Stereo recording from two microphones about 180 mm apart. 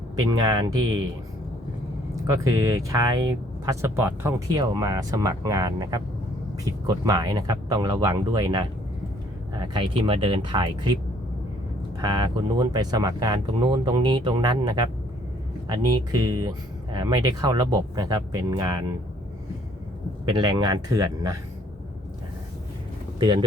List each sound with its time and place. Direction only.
0.2 s speech: 20° right (ahead or behind)
2.2 s speech: 20° right (ahead or behind)
11.9 s speech: 25° right (ahead or behind)
20.2 s speech: 25° right (ahead or behind)